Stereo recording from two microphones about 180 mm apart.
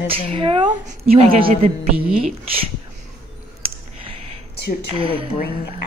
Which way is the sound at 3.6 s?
30° right (ahead or behind).